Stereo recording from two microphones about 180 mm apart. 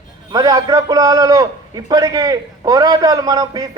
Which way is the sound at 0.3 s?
20° right (ahead or behind).